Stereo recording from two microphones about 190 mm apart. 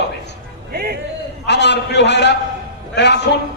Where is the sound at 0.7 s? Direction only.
50° right (ahead or behind).